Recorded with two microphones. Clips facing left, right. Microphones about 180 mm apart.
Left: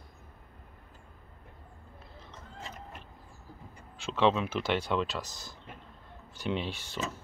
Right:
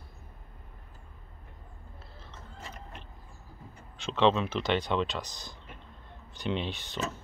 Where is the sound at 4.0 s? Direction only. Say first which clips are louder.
Right 1 dB; 10° left (ahead or behind).